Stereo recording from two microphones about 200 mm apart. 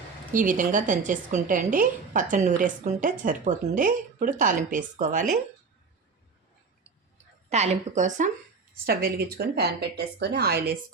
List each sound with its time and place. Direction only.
0.3 s speech: 40° right (ahead or behind)
7.5 s a woman's voice: 35° right (ahead or behind); by 10.8 s 50° right (ahead or behind)